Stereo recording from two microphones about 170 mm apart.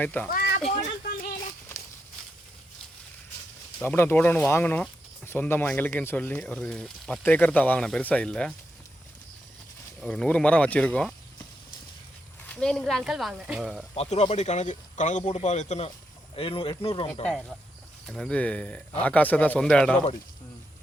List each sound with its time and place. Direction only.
0.0 s speech: 10° left (ahead or behind)
0.3 s a sound: 60° left (ahead or behind)
0.6 s speech: 35° left (ahead or behind)
3.8 s speech: 10° left (ahead or behind)
10.0 s speech: 5° left (ahead or behind)
12.5 s speech: 5° left (ahead or behind)
13.9 s speech: 40° left (ahead or behind)
18.0 s speech: 5° left (ahead or behind)